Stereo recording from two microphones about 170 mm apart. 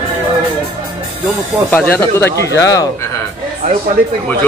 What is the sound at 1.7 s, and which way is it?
Speech, 10° left (ahead or behind).